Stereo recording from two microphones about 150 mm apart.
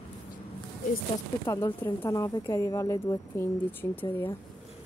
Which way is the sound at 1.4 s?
25° left (ahead or behind).